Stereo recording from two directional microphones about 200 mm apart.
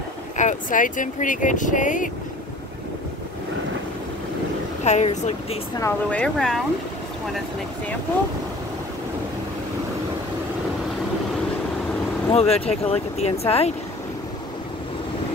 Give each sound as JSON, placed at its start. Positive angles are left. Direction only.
{"t": 0.4, "sound": "speech", "side_deg": 40}
{"t": 4.8, "sound": "speech", "side_deg": 35}
{"t": 5.8, "sound": "speech", "side_deg": 10}
{"t": 12.3, "sound": "speech", "side_deg": 30}